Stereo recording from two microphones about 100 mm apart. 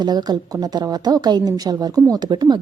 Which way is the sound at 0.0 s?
40° right (ahead or behind).